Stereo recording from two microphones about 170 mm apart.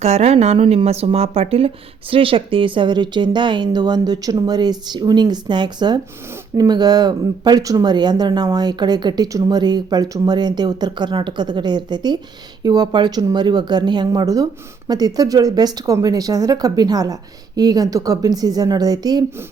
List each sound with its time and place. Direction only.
0.0 s speech: 40° right (ahead or behind); by 19.2 s 20° right (ahead or behind)